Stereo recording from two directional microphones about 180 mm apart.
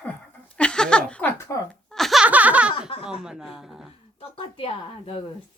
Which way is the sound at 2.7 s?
30° left (ahead or behind).